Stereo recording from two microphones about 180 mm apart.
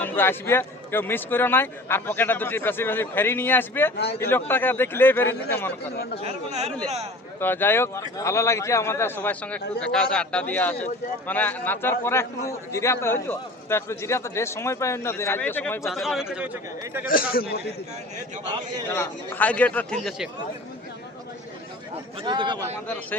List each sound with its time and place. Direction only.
0.0 s a man's voice: 10° left (ahead or behind)
3.9 s a man's voice: 65° left (ahead or behind)
4.2 s a man's voice: 10° left (ahead or behind)
6.2 s speech: 35° right (ahead or behind)
7.3 s a man's voice: 10° left (ahead or behind)
15.9 s speech: centre (ahead or behind)
17.1 s a man's voice: 50° left (ahead or behind)
18.9 s a man's voice: 10° left (ahead or behind)
22.2 s speech: 25° right (ahead or behind)